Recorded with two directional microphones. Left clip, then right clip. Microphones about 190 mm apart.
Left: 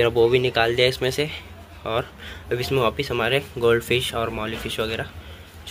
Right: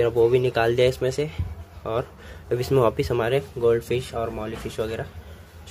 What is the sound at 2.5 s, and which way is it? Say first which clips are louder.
Speech: right 1 dB; 25° right (ahead or behind).